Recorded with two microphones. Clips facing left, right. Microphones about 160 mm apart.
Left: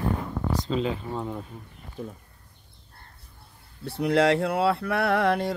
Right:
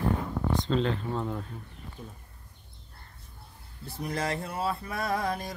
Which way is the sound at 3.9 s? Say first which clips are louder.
Left 11 dB; 65° left (ahead or behind).